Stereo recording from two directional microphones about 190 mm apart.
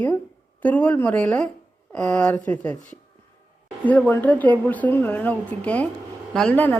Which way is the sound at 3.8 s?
10° left (ahead or behind).